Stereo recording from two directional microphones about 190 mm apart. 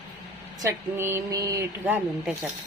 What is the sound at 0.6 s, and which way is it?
Speech, 15° right (ahead or behind).